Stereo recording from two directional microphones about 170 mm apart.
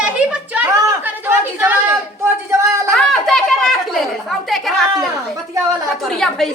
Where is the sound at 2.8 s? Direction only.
5° left (ahead or behind).